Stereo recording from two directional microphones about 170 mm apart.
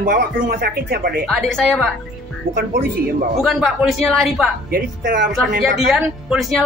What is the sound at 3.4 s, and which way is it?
A woman's voice, centre (ahead or behind).